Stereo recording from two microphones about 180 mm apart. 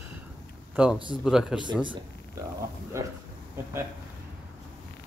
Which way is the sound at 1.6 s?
25° right (ahead or behind).